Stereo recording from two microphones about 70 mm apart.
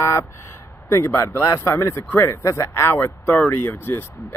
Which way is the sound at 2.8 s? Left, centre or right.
Left.